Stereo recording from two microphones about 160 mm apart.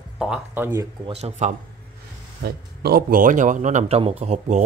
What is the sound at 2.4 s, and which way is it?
A man's voice, 80° right.